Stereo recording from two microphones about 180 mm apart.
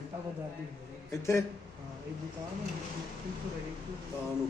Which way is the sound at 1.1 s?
15° left (ahead or behind).